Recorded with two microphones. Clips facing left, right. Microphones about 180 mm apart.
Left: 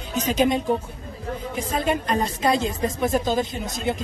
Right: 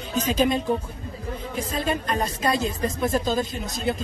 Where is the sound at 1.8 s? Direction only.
25° left (ahead or behind).